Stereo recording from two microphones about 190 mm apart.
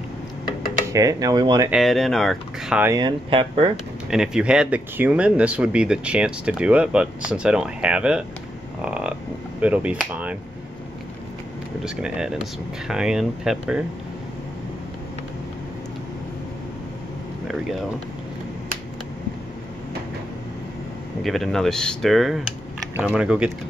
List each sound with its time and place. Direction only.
0.9 s speech: 20° right (ahead or behind)
1.7 s speech: centre (ahead or behind)
2.8 s speech: 20° right (ahead or behind)
4.1 s speech: 5° right (ahead or behind)
11.8 s speech: 5° right (ahead or behind)
21.2 s speech: centre (ahead or behind)